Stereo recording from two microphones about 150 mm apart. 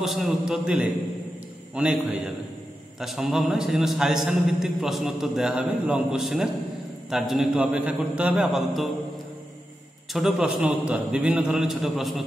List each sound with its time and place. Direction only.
0.0 s a man's voice: centre (ahead or behind)
10.1 s a man's voice: centre (ahead or behind)